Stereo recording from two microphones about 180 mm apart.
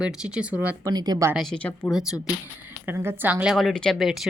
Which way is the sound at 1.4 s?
5° left (ahead or behind).